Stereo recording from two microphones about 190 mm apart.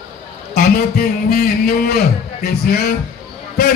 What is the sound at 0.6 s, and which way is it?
A man's voice, 50° left (ahead or behind).